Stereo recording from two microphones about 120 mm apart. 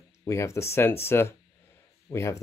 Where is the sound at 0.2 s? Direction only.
25° left (ahead or behind).